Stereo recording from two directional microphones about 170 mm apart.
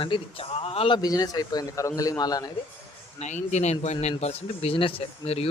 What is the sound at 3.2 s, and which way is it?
Speech, 45° left (ahead or behind).